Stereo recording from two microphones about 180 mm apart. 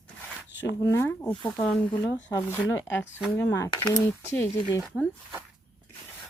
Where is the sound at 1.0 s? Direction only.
15° left (ahead or behind).